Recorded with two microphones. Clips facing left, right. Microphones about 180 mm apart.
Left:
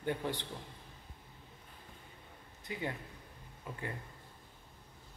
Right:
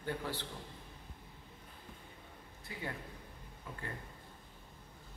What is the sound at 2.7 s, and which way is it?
Speech, 20° left (ahead or behind).